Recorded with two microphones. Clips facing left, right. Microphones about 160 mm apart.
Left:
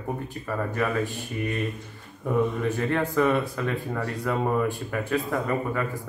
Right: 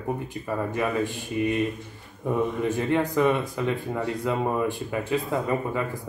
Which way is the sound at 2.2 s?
15° right (ahead or behind).